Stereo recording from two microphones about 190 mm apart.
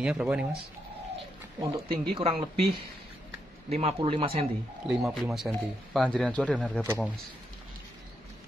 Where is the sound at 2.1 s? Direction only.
30° right (ahead or behind).